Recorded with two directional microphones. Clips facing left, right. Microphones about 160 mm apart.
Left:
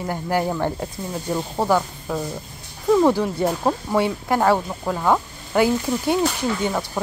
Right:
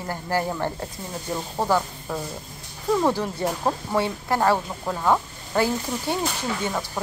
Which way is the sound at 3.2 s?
5° left (ahead or behind).